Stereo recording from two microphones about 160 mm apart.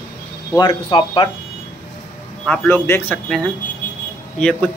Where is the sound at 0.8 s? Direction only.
35° left (ahead or behind).